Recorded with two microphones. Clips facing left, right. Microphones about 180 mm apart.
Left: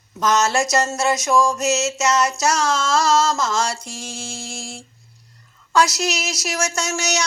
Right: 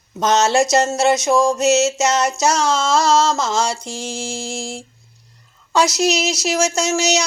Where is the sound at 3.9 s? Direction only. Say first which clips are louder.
Right 6 dB; 25° right (ahead or behind).